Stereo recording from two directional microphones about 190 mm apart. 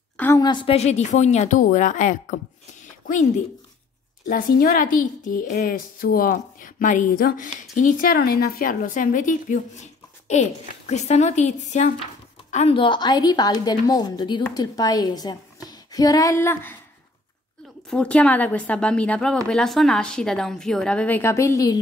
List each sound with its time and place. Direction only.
0.2 s a woman's voice: 15° left (ahead or behind); by 3.2 s 45° left (ahead or behind)
4.3 s a woman's voice: 45° left (ahead or behind); by 16.7 s 10° left (ahead or behind)
17.8 s speech: 5° left (ahead or behind)